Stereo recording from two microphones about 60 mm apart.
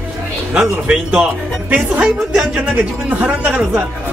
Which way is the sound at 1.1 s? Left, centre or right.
Right.